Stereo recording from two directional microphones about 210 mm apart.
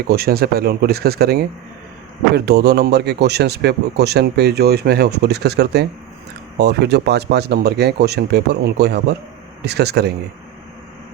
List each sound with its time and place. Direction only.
0.1 s speech: 50° right (ahead or behind)